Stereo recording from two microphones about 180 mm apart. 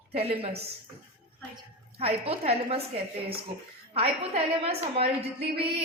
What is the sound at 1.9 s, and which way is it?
Speech, 35° right (ahead or behind).